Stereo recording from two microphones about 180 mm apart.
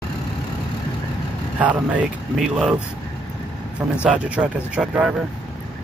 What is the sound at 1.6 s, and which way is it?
Speech, 10° right (ahead or behind).